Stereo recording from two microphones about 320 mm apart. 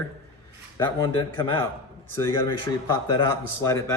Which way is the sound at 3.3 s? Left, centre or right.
Centre.